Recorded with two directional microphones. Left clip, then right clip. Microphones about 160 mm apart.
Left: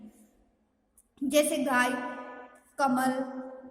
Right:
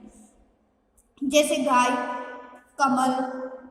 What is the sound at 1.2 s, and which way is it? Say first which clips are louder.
Speech: right 5 dB; 45° left (ahead or behind).